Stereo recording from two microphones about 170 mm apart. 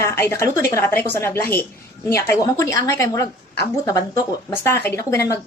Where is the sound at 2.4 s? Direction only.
20° left (ahead or behind).